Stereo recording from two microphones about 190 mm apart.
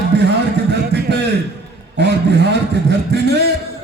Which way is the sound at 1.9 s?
65° right (ahead or behind).